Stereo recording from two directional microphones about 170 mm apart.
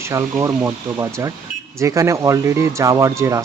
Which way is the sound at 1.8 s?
15° right (ahead or behind).